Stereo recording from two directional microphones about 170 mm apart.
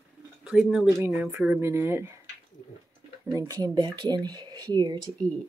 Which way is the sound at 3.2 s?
20° right (ahead or behind).